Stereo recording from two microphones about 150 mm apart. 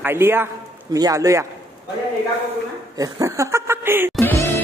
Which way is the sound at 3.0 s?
20° right (ahead or behind).